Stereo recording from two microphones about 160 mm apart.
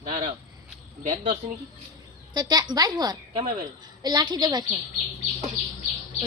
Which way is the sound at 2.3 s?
25° right (ahead or behind).